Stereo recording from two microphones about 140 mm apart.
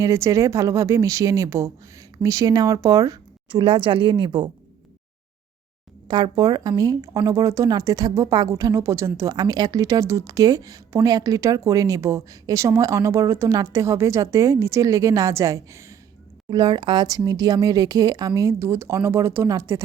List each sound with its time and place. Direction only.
0.0 s speech: 20° right (ahead or behind)
3.5 s speech: 35° right (ahead or behind)
6.1 s speech: 30° right (ahead or behind)
16.5 s speech: 35° right (ahead or behind)